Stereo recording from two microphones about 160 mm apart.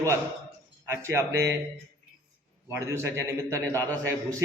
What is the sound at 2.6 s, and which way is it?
A man's voice, 15° right (ahead or behind).